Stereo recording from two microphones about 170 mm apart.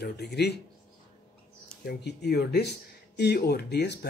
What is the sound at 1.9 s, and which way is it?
Speech, 75° left (ahead or behind).